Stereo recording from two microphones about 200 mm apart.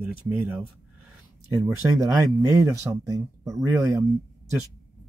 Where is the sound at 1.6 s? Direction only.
15° right (ahead or behind).